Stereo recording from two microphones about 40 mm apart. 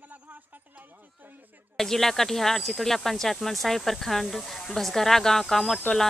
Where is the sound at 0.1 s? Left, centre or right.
Right.